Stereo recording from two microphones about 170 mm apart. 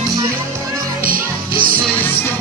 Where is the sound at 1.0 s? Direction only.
55° right (ahead or behind).